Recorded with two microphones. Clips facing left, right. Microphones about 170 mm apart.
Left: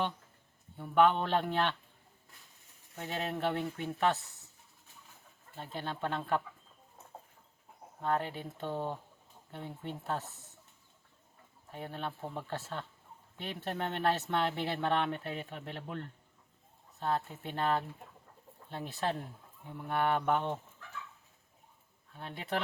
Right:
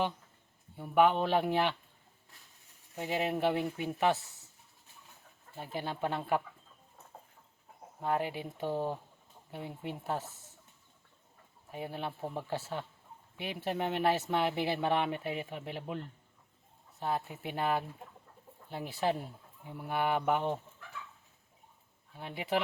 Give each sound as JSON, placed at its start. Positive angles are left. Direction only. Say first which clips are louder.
{"t": 0.8, "sound": "speech", "louder": "even", "side_deg": -10}
{"t": 2.9, "sound": "speech", "louder": "right 4 dB", "side_deg": -10}
{"t": 5.5, "sound": "speech", "louder": "right 2 dB", "side_deg": -10}
{"t": 8.0, "sound": "speech", "louder": "right 1 dB", "side_deg": -10}
{"t": 11.7, "sound": "speech", "louder": "right 2 dB", "side_deg": -10}
{"t": 22.1, "sound": "speech", "louder": "right 3 dB", "side_deg": -10}